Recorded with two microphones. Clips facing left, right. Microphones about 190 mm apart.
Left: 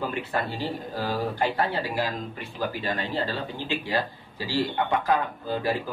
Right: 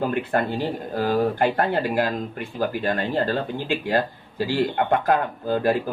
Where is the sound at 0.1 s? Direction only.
55° right (ahead or behind).